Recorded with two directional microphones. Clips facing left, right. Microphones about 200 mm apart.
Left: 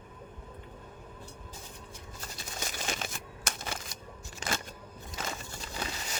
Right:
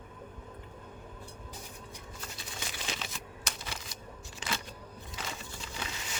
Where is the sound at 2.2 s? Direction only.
45° left (ahead or behind).